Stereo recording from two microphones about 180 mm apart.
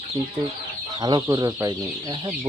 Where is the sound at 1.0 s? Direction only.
25° right (ahead or behind).